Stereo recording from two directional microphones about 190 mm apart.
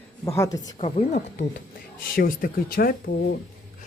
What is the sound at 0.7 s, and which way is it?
Speech, 35° left (ahead or behind).